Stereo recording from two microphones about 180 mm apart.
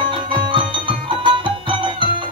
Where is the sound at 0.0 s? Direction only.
25° right (ahead or behind).